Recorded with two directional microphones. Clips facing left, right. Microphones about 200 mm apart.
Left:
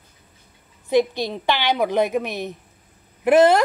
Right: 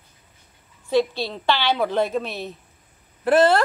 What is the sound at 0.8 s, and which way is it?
A woman's voice, 15° left (ahead or behind).